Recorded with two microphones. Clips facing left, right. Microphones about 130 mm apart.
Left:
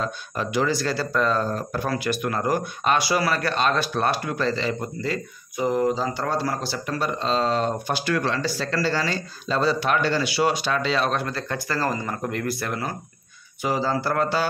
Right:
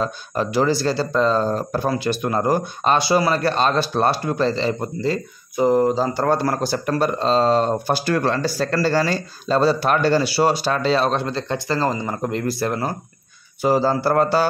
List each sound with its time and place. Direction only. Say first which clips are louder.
0.0 s speech: right 5 dB; 35° right (ahead or behind)